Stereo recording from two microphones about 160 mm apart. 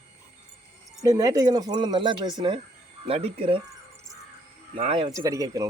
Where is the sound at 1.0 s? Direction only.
20° right (ahead or behind); by 3.6 s 35° right (ahead or behind).